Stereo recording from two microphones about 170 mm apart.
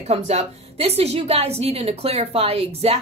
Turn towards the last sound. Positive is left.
turn(degrees=-35)  # may be behind; listen again after turning